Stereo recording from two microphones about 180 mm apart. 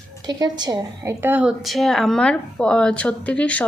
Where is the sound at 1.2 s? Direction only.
10° right (ahead or behind).